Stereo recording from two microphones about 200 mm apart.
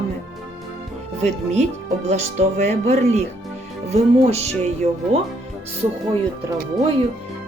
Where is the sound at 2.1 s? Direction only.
35° right (ahead or behind).